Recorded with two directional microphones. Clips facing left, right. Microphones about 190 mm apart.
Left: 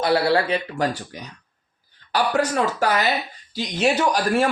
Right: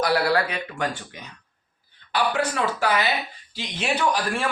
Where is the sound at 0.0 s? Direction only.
25° left (ahead or behind).